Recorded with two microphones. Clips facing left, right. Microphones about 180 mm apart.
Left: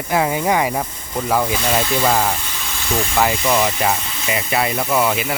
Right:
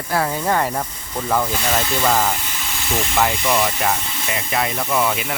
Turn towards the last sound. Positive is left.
turn(degrees=5)  # may be behind; listen again after turning